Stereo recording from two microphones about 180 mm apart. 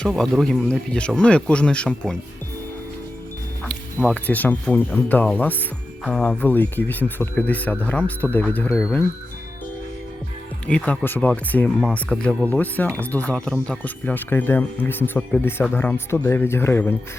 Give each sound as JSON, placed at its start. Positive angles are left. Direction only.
{"t": 0.0, "sound": "speech", "side_deg": 0}
{"t": 4.1, "sound": "speech", "side_deg": 10}
{"t": 10.7, "sound": "speech", "side_deg": 5}